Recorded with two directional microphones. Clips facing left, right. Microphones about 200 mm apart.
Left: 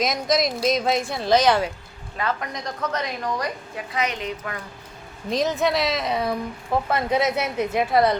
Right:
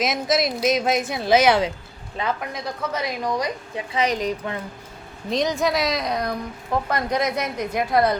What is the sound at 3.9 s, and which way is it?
Speech, 35° right (ahead or behind).